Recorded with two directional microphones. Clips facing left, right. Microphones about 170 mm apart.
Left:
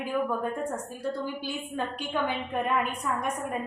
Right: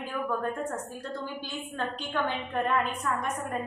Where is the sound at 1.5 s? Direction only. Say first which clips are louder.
Left 2 dB; 10° left (ahead or behind).